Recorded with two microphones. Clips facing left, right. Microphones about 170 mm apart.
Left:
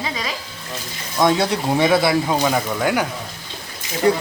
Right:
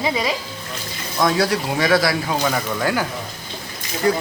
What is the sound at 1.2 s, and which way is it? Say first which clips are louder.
Speech: left 1 dB; 25° left (ahead or behind).